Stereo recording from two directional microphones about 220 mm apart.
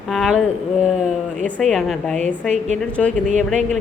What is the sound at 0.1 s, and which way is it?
Speech, centre (ahead or behind).